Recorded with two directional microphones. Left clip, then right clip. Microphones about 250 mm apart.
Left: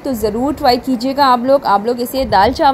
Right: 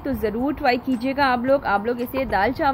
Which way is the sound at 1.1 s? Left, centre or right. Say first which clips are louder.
Left 8 dB; centre.